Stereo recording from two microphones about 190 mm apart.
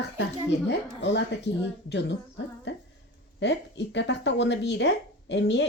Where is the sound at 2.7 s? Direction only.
65° left (ahead or behind).